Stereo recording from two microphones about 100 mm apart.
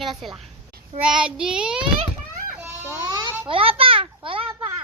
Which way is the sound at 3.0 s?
40° right (ahead or behind).